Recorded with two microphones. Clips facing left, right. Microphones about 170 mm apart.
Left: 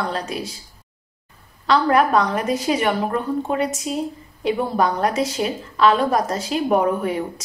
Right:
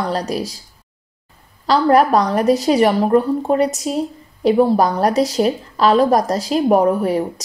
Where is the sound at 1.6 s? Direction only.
35° right (ahead or behind).